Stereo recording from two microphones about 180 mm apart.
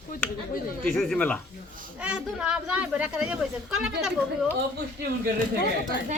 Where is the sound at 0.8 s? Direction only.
Centre (ahead or behind).